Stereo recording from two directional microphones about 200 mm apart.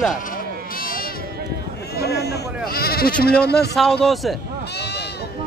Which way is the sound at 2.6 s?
50° left (ahead or behind).